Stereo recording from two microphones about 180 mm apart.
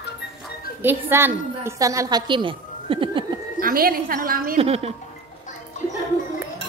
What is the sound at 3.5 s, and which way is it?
A woman's voice, 55° right (ahead or behind).